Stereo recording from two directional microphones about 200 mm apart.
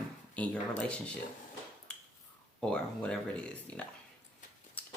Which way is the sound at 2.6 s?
5° left (ahead or behind).